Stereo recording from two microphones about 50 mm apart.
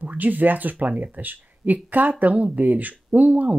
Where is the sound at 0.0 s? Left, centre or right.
Right.